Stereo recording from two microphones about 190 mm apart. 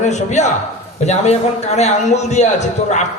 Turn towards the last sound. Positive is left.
turn(degrees=35)  # may be behind; listen again after turning